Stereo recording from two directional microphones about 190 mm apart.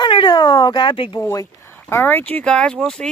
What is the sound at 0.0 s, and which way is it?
Cat, 25° left (ahead or behind).